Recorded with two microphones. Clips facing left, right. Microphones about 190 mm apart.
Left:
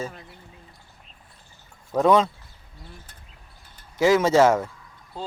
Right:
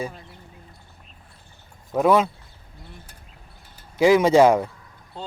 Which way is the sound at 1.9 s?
10° right (ahead or behind).